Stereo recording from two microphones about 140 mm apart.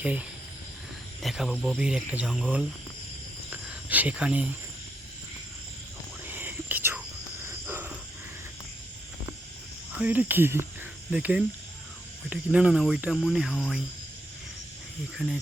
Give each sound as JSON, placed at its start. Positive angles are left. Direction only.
{"t": 0.0, "sound": "speech", "side_deg": -10}
{"t": 3.5, "sound": "a sound", "side_deg": -10}
{"t": 6.2, "sound": "whispering", "side_deg": -15}
{"t": 7.4, "sound": "a sound", "side_deg": -15}
{"t": 10.0, "sound": "speech", "side_deg": -10}
{"t": 15.1, "sound": "speech", "side_deg": 0}